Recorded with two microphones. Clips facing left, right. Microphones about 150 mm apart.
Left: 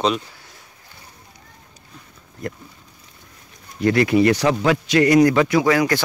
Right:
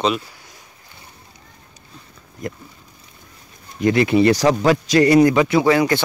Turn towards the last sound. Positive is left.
turn(degrees=-25)  # may be behind; listen again after turning